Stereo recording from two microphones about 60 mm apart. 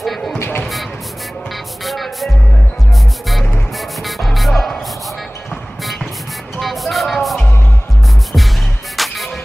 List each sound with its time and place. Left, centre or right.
0.0 s music: centre
0.4 s music: left
1.9 s music: centre
3.7 s music: centre
6.6 s music: centre
8.9 s music: centre